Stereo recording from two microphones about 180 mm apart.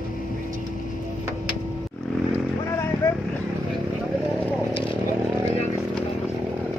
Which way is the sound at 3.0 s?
20° left (ahead or behind).